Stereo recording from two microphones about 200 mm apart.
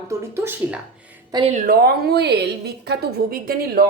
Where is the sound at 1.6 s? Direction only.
50° right (ahead or behind).